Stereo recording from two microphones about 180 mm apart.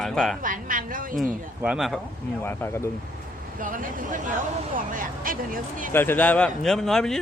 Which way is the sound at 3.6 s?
50° right (ahead or behind).